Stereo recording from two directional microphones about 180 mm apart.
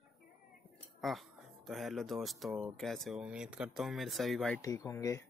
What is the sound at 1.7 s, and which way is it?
Speech, centre (ahead or behind).